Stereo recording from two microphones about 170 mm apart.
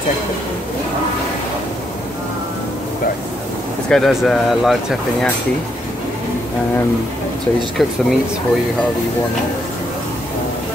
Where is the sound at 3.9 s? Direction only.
Centre (ahead or behind).